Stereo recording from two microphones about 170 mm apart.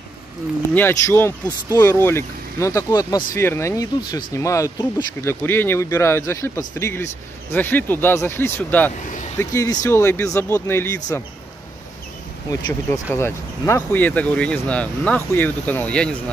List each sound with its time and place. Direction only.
0.7 s speech: 15° left (ahead or behind)
12.4 s speech: 20° left (ahead or behind)